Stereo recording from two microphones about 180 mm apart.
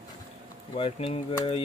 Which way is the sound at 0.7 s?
35° left (ahead or behind).